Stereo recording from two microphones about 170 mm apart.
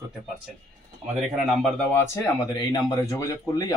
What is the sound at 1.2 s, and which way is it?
Speech, centre (ahead or behind).